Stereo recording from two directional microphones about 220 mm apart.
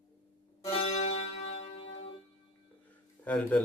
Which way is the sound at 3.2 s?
5° left (ahead or behind).